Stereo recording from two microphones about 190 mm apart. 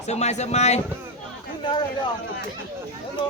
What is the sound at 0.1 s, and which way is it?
Speech, 35° left (ahead or behind).